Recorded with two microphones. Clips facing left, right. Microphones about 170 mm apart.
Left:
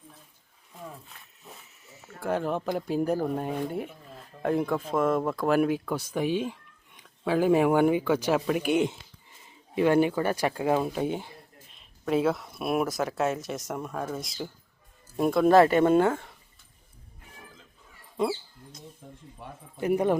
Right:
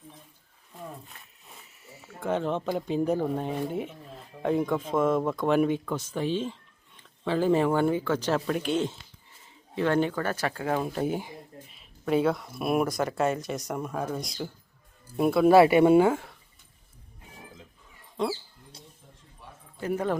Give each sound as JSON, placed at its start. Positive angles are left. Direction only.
{"t": 2.2, "sound": "speech", "side_deg": 5}
{"t": 10.9, "sound": "speech", "side_deg": 0}
{"t": 19.0, "sound": "a sound", "side_deg": 65}
{"t": 19.8, "sound": "speech", "side_deg": 15}